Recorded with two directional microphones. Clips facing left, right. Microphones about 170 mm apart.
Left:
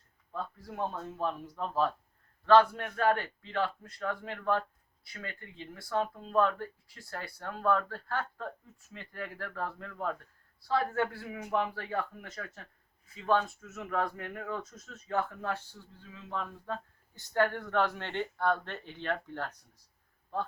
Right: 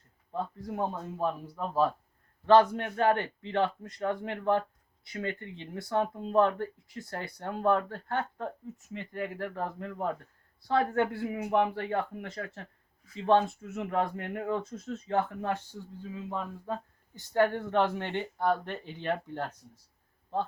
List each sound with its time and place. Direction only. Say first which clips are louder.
0.3 s speech: right 4 dB; 15° right (ahead or behind)